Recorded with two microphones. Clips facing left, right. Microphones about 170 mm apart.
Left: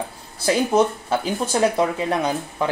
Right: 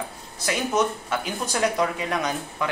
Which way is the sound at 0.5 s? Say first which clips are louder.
Left 6 dB; 30° left (ahead or behind).